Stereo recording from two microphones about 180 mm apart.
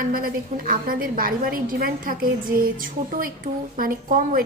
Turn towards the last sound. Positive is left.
turn(degrees=-50)  # may be behind; listen again after turning